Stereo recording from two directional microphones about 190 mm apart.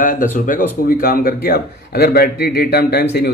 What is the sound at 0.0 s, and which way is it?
A man's voice, 45° left (ahead or behind).